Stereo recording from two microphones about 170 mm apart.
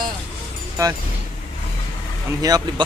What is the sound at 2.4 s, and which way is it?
Speech, 20° right (ahead or behind).